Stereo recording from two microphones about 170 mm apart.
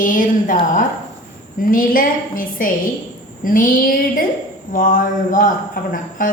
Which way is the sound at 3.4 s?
55° left (ahead or behind).